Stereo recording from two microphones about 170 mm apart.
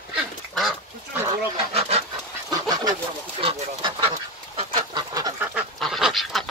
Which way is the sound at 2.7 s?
25° right (ahead or behind).